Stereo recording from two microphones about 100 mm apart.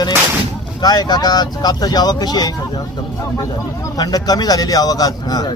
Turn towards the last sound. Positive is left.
turn(degrees=40)  # may be behind; listen again after turning